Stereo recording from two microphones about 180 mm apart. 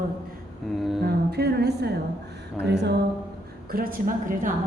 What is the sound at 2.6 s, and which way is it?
Speech, 70° right (ahead or behind).